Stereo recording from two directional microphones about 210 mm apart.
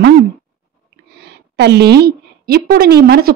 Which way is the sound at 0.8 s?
50° right (ahead or behind).